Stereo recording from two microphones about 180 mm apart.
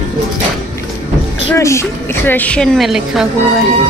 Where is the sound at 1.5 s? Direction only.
15° left (ahead or behind); by 3.2 s centre (ahead or behind).